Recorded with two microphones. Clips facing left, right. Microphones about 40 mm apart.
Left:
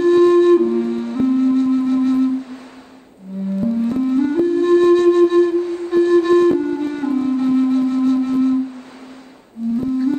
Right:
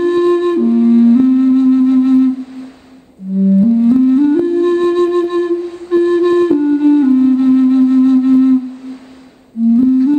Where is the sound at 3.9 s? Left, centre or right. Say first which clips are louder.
Right 8 dB; centre.